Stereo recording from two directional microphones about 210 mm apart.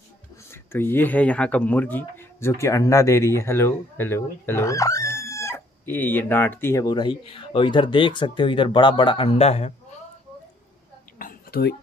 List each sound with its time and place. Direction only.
0.5 s speech: 10° left (ahead or behind); by 9.9 s 30° left (ahead or behind)
11.1 s whispering: 45° left (ahead or behind)